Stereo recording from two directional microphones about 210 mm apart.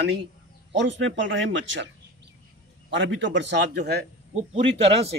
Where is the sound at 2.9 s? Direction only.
65° right (ahead or behind).